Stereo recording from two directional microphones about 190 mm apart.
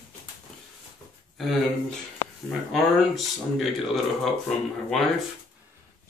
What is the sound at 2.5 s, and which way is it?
Speech, centre (ahead or behind).